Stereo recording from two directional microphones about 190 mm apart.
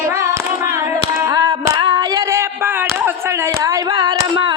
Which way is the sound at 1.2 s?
20° right (ahead or behind).